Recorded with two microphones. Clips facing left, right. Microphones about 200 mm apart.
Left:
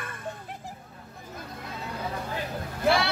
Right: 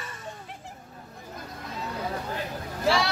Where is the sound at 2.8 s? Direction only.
55° left (ahead or behind).